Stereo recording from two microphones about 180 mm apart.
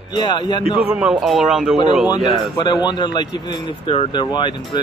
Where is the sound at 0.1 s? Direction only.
25° left (ahead or behind).